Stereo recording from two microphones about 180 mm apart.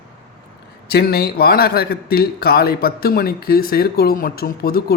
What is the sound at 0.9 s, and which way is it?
A man's voice, 60° left (ahead or behind).